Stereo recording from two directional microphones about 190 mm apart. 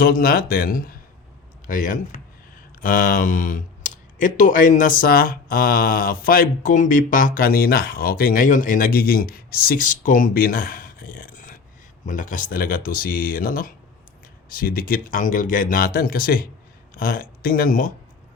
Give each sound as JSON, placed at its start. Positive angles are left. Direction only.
{"t": 0.0, "sound": "speech", "side_deg": 50}